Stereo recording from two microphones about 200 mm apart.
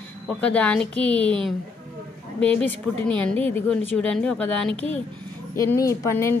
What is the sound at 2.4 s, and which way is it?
A woman's voice, 10° left (ahead or behind).